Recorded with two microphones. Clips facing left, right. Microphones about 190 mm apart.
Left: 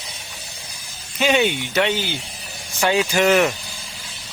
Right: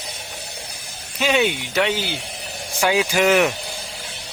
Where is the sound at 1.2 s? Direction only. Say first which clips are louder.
Left 1 dB; centre (ahead or behind).